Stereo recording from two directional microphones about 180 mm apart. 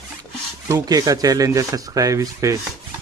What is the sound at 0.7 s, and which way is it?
Speech, 20° right (ahead or behind).